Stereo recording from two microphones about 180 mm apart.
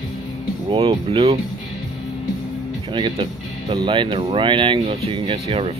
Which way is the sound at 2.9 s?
25° right (ahead or behind).